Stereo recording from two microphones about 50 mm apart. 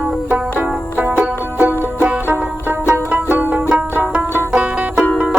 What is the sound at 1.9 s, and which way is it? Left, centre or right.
Banjo, right.